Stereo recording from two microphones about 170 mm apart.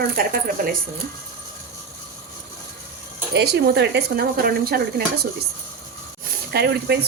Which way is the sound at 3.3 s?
75° right (ahead or behind).